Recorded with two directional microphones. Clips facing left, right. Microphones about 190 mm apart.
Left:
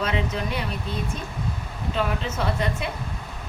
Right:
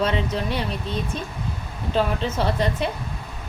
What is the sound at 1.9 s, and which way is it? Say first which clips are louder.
Speech: right 4 dB; 30° right (ahead or behind).